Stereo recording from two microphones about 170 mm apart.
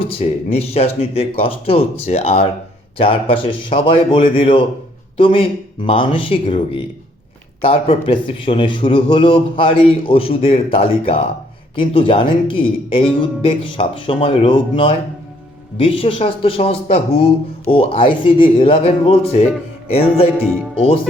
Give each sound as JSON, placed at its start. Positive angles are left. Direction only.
{"t": 0.0, "sound": "a man's voice", "side_deg": 35}
{"t": 7.6, "sound": "a man's voice", "side_deg": 35}